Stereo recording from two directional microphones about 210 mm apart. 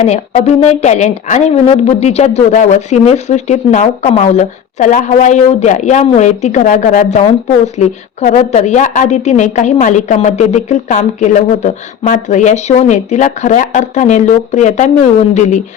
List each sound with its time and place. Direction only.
0.0 s a woman's voice: 30° left (ahead or behind)